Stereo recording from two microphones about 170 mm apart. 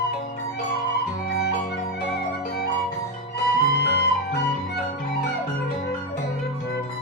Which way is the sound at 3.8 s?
75° left (ahead or behind).